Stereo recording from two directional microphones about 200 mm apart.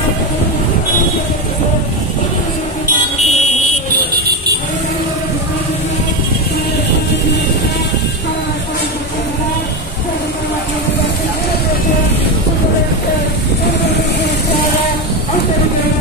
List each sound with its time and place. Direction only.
3.2 s vehicle: 35° left (ahead or behind)